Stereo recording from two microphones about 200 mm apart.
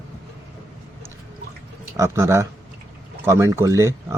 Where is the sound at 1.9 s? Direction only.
15° right (ahead or behind).